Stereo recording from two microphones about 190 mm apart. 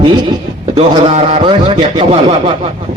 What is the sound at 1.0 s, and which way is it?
Speech, 35° right (ahead or behind).